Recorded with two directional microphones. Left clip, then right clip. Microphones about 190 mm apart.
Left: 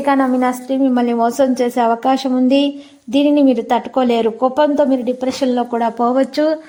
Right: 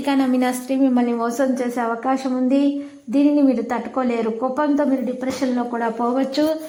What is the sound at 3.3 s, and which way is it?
Speech, 20° left (ahead or behind).